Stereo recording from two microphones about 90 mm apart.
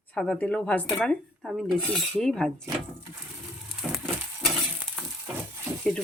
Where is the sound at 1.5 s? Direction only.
Centre (ahead or behind).